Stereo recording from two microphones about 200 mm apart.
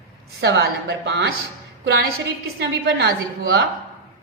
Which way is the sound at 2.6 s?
55° right (ahead or behind).